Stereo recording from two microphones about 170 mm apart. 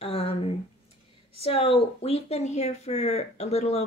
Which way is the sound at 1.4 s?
35° left (ahead or behind).